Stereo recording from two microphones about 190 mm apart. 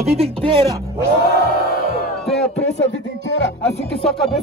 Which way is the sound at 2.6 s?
70° left (ahead or behind).